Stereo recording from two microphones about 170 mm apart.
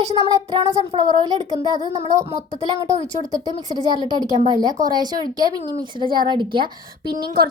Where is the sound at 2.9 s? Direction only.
20° right (ahead or behind).